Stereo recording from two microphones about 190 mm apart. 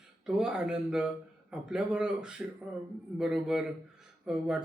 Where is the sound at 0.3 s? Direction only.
5° right (ahead or behind).